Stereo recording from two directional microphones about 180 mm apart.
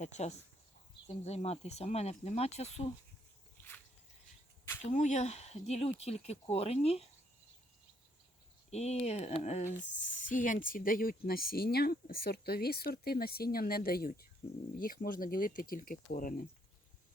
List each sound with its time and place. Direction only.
0.0 s speech: 40° left (ahead or behind)
4.9 s speech: 40° left (ahead or behind)
8.7 s speech: 35° left (ahead or behind)